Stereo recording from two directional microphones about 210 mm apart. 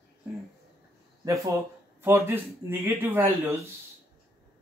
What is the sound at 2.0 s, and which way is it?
Speech, 10° right (ahead or behind).